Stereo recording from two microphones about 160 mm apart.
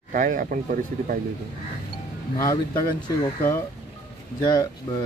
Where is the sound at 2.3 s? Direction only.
20° left (ahead or behind).